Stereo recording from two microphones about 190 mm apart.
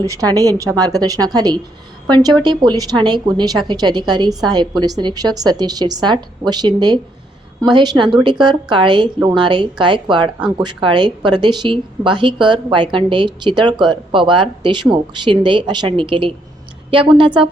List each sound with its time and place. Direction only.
0.0 s a woman's voice: 15° right (ahead or behind)